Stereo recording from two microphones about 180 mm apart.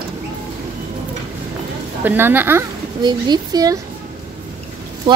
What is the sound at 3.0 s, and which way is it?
Speech, 25° right (ahead or behind).